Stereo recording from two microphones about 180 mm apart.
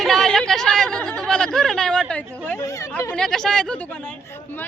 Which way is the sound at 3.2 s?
5° left (ahead or behind).